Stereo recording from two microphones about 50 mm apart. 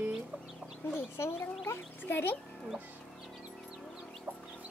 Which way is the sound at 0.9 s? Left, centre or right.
Left.